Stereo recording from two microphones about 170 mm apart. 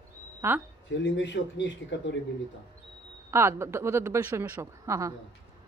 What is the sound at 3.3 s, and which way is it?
A woman's voice, 15° right (ahead or behind).